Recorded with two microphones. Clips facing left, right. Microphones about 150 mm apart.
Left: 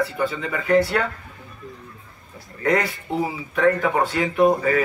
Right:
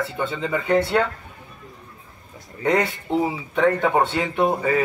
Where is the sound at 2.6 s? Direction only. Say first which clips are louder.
Right 1 dB; 25° right (ahead or behind).